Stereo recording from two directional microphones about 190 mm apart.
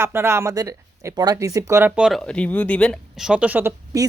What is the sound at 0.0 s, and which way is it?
Speech, 15° right (ahead or behind).